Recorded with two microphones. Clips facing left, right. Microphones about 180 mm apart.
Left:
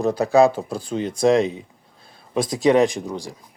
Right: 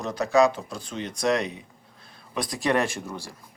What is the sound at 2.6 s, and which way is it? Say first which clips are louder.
Speech: left 8 dB; 20° left (ahead or behind).